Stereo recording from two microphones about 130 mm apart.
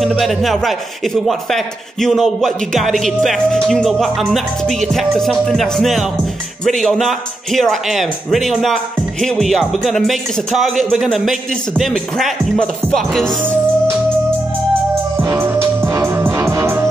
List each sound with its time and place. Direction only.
0.0 s speech: centre (ahead or behind)
13.4 s music: 15° right (ahead or behind)